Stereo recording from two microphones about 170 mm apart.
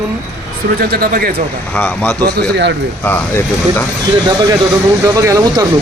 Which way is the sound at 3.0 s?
10° left (ahead or behind).